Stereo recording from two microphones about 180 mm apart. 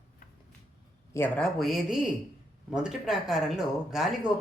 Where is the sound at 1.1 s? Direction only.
10° left (ahead or behind).